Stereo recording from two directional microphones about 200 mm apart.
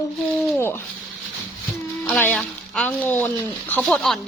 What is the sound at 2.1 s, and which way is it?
A woman's voice, 10° left (ahead or behind).